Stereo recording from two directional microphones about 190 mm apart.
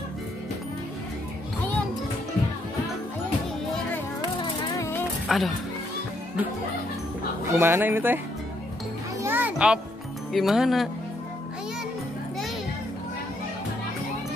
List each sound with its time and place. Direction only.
4.4 s music: 15° left (ahead or behind)
5.3 s speech: centre (ahead or behind)
7.5 s speech: 15° right (ahead or behind)
9.2 s music: 10° right (ahead or behind)
10.3 s speech: centre (ahead or behind)